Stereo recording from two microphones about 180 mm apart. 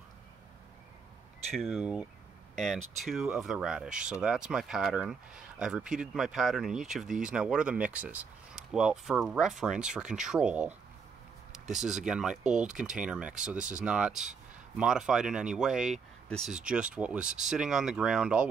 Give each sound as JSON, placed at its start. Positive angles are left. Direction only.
{"t": 1.6, "sound": "speech", "side_deg": 0}
{"t": 12.4, "sound": "speech", "side_deg": -40}
{"t": 12.7, "sound": "speech", "side_deg": -5}